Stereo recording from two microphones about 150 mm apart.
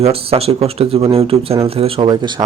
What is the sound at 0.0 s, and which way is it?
Speech, 40° right (ahead or behind).